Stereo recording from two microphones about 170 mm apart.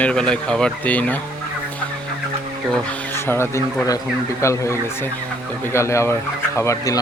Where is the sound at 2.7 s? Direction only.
10° left (ahead or behind).